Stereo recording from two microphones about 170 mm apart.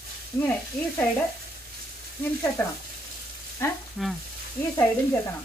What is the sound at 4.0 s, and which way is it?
Speech, centre (ahead or behind).